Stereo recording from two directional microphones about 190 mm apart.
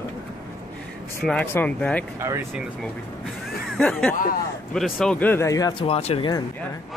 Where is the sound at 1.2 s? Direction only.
10° left (ahead or behind).